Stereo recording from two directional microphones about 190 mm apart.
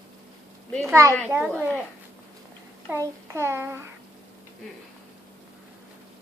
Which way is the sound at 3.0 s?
15° right (ahead or behind).